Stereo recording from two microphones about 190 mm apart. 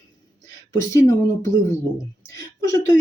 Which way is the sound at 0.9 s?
15° left (ahead or behind).